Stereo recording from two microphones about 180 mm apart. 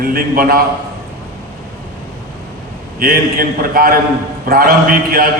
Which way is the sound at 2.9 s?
55° right (ahead or behind).